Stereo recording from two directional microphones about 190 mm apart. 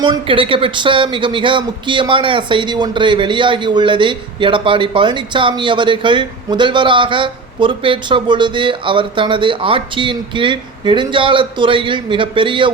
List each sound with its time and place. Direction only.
0.0 s speech: 25° right (ahead or behind)